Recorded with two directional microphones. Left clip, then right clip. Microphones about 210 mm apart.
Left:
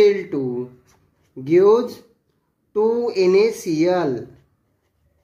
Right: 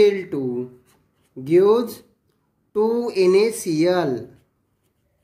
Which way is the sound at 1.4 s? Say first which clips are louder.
Left 2 dB; 25° right (ahead or behind).